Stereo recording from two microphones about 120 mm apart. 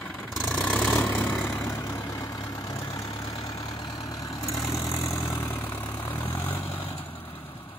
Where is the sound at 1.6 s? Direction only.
30° left (ahead or behind).